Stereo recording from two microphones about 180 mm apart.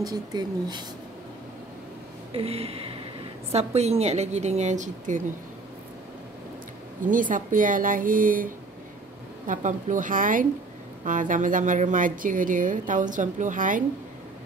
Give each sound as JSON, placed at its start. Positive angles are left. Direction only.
{"t": 0.0, "sound": "speech", "side_deg": -20}
{"t": 2.3, "sound": "a woman's voice", "side_deg": -35}
{"t": 7.1, "sound": "a woman's voice", "side_deg": -45}
{"t": 9.5, "sound": "a woman's voice", "side_deg": -45}